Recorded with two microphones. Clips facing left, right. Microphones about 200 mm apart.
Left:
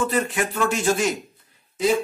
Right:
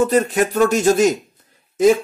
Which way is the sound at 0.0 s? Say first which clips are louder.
Right 7 dB; 40° right (ahead or behind).